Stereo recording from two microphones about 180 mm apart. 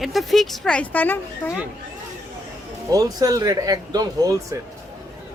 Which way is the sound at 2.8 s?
20° right (ahead or behind).